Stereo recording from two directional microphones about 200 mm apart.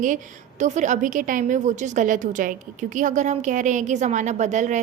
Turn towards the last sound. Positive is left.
turn(degrees=-35)  # may be behind; listen again after turning